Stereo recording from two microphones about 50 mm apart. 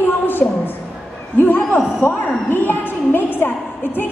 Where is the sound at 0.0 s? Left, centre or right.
Left.